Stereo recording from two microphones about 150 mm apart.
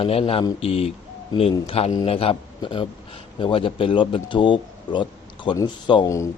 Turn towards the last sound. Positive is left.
turn(degrees=30)  # may be behind; listen again after turning